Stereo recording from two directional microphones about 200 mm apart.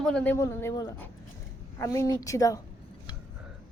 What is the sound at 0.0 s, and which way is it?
Speech, 5° left (ahead or behind).